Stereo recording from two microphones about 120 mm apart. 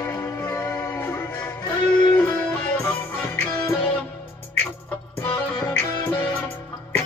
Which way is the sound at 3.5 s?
30° left (ahead or behind).